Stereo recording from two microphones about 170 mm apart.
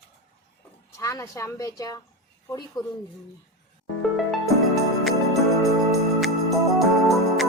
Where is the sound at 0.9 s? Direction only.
20° left (ahead or behind).